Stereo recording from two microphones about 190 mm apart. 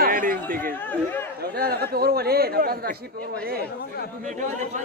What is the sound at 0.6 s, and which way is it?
Speech, 10° left (ahead or behind).